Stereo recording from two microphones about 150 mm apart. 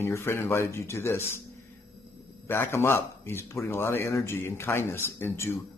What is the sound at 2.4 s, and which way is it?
A man's voice, 15° left (ahead or behind).